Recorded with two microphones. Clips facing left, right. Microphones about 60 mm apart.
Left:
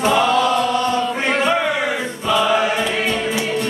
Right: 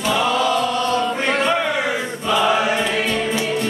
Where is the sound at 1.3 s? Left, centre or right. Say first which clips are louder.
Left 2 dB; centre.